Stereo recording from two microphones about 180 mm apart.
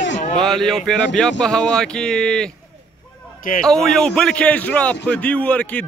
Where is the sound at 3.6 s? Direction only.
5° left (ahead or behind).